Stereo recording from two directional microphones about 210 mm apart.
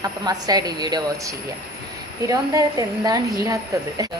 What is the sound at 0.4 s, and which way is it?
A woman's voice, 20° right (ahead or behind).